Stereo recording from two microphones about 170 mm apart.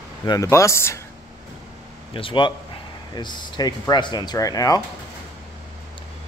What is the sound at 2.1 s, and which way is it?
Speech, 30° left (ahead or behind).